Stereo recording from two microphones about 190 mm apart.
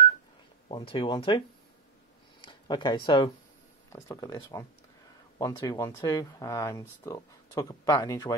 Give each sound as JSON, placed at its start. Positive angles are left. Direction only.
{"t": 0.7, "sound": "speech", "side_deg": 25}
{"t": 2.4, "sound": "a sound", "side_deg": 25}
{"t": 3.9, "sound": "speech", "side_deg": 20}